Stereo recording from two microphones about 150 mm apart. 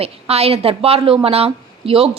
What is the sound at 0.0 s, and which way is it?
A woman's voice, 40° right (ahead or behind).